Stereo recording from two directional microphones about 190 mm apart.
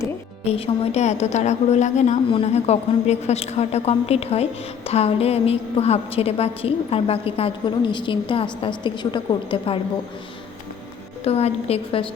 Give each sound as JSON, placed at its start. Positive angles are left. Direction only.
{"t": 0.4, "sound": "a woman's voice", "side_deg": 30}
{"t": 11.2, "sound": "a woman's voice", "side_deg": 35}